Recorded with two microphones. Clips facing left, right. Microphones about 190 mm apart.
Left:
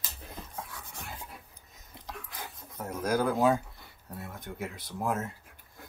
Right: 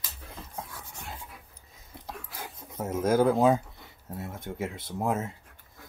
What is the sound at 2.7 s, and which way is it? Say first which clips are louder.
Bird: right 6 dB; 25° right (ahead or behind).